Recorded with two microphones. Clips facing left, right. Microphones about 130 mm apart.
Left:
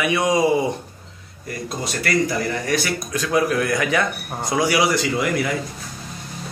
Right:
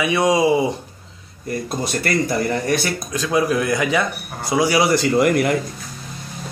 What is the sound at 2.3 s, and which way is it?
Speech, 30° right (ahead or behind).